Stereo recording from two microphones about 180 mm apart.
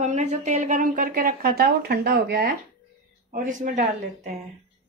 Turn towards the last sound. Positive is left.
turn(degrees=-45)  # may be behind; listen again after turning